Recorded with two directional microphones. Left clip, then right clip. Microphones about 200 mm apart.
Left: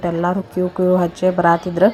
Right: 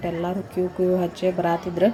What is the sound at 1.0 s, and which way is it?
Speech, 20° left (ahead or behind).